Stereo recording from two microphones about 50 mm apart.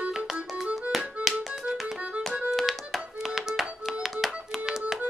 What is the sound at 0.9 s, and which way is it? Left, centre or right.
Music, centre.